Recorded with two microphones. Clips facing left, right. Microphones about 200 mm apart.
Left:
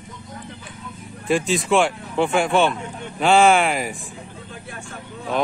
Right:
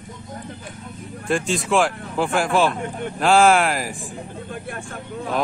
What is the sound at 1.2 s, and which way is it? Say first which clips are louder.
Speech: left 2 dB; centre (ahead or behind).